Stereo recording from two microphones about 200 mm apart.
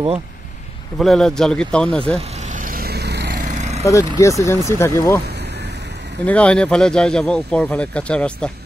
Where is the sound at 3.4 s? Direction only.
35° right (ahead or behind).